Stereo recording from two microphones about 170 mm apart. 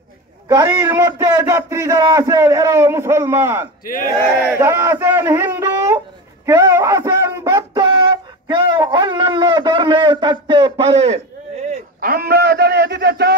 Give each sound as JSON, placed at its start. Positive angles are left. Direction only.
{"t": 0.5, "sound": "a man's voice", "side_deg": -25}
{"t": 3.8, "sound": "speech", "side_deg": 55}
{"t": 4.6, "sound": "a man's voice", "side_deg": -15}
{"t": 12.0, "sound": "speech", "side_deg": -65}